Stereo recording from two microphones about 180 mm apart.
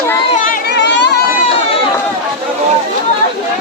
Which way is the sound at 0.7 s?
75° left (ahead or behind).